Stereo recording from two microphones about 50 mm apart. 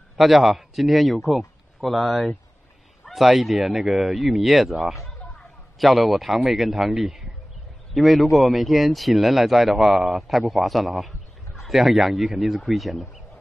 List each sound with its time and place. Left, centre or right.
0.2 s a man's voice: centre